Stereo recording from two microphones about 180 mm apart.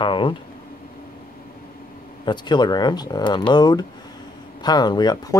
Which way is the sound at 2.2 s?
25° left (ahead or behind).